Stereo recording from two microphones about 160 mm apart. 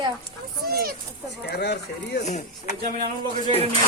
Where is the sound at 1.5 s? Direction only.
90° left.